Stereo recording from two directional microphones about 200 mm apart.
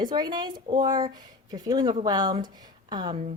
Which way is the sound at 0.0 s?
20° right (ahead or behind).